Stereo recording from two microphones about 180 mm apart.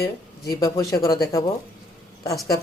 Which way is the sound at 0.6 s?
15° left (ahead or behind).